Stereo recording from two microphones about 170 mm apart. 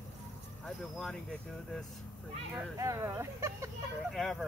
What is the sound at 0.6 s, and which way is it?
Speech, 5° left (ahead or behind).